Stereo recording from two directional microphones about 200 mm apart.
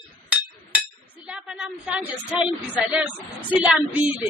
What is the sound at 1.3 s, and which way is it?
A woman's voice, 5° right (ahead or behind).